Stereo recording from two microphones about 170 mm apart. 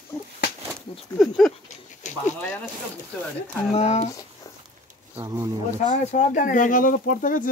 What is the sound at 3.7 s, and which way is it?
Speech, 40° left (ahead or behind).